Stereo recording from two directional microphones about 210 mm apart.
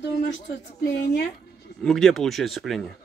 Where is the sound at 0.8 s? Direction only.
50° left (ahead or behind).